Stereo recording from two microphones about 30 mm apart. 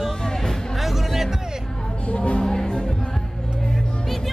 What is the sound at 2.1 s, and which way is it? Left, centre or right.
Music, left.